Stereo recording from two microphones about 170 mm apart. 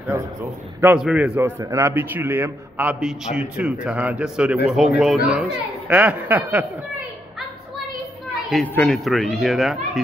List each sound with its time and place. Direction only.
0.1 s a man's voice: 15° right (ahead or behind)
8.7 s speech: 5° left (ahead or behind)